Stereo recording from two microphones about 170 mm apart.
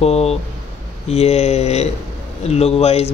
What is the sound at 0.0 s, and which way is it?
Speech, 40° left (ahead or behind).